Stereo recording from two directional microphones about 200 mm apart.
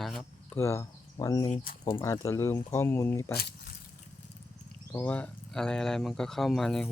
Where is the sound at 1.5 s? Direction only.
45° left (ahead or behind).